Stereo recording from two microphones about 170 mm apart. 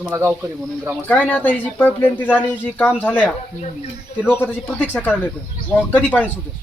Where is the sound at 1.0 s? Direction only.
10° left (ahead or behind).